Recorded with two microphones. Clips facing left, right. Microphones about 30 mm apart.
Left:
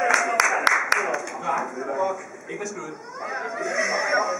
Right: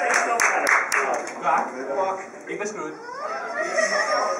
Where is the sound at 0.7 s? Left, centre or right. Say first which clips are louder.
Right 1 dB; left.